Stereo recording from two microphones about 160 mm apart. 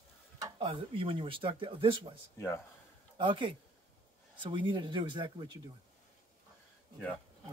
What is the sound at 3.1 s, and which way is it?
Speech, 30° right (ahead or behind).